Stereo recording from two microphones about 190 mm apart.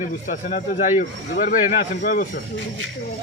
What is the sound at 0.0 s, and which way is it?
Speech, 40° left (ahead or behind).